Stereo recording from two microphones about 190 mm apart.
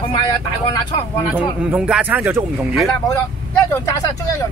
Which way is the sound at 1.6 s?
5° right (ahead or behind).